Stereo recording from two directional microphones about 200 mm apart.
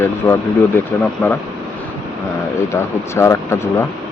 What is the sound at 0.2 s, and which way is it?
Speech, 15° left (ahead or behind).